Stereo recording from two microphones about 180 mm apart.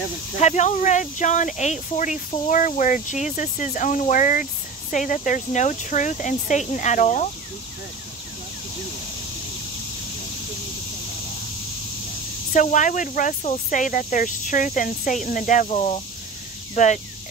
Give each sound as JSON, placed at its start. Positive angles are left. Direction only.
{"t": 0.4, "sound": "speech", "side_deg": 40}
{"t": 12.5, "sound": "speech", "side_deg": 45}